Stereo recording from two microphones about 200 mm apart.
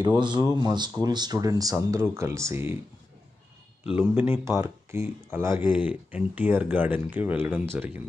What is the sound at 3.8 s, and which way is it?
Speech, 5° right (ahead or behind).